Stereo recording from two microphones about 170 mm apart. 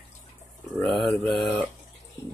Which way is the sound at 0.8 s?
Centre (ahead or behind).